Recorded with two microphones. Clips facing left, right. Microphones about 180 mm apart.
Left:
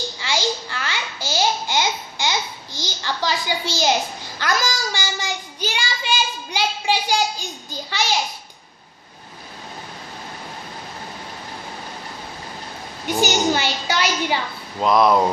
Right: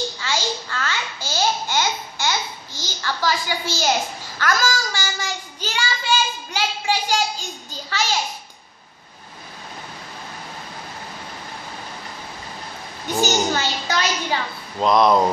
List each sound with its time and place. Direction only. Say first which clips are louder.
0.2 s babbling: left 2 dB; 15° left (ahead or behind)
4.4 s child singing: right 1 dB; 20° left (ahead or behind)
13.0 s a sound: left 1 dB; 15° left (ahead or behind)